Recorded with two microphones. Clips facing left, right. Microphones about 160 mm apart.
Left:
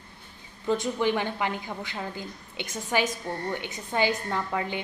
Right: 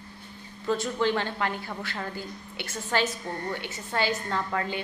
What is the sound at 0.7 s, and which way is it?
A woman's voice, 15° left (ahead or behind).